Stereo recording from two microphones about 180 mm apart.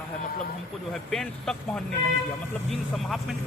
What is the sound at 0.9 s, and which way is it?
Speech, 5° left (ahead or behind).